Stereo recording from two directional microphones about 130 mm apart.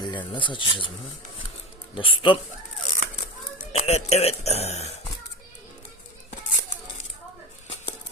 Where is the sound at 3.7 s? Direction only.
55° left (ahead or behind).